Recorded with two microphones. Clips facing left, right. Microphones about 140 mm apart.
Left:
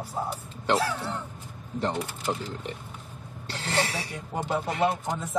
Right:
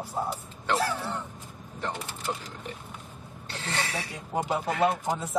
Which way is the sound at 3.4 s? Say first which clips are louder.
Left 4 dB; 35° left (ahead or behind).